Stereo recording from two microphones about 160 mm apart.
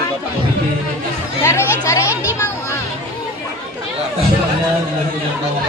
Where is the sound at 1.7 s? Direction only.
20° left (ahead or behind).